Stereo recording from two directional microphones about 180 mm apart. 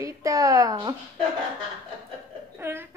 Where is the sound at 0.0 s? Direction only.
20° right (ahead or behind).